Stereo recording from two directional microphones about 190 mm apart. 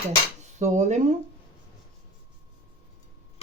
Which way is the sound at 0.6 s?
40° right (ahead or behind).